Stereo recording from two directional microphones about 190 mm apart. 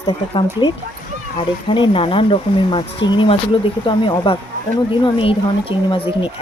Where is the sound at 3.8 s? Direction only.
25° left (ahead or behind).